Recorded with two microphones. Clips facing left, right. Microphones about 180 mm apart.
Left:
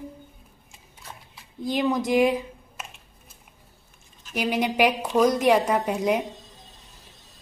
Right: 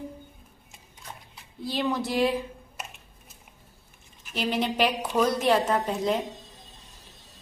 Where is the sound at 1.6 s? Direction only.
15° left (ahead or behind).